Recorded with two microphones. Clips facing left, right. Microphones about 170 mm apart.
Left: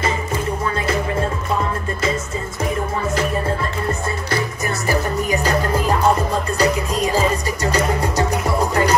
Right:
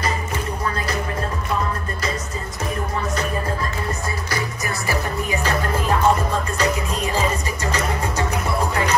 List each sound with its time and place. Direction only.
4.8 s music: 40° left (ahead or behind)
6.6 s music: 35° left (ahead or behind)